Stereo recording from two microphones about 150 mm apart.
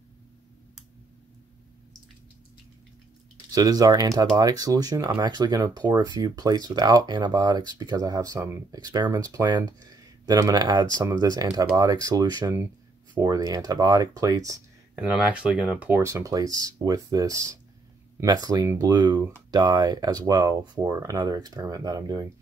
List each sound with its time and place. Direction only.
3.5 s speech: 25° right (ahead or behind)
15.0 s speech: 10° right (ahead or behind); by 22.3 s 25° right (ahead or behind)